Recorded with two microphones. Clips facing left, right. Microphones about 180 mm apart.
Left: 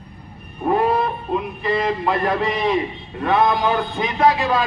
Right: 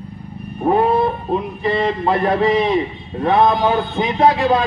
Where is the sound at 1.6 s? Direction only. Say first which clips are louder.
Right 2 dB; 30° right (ahead or behind).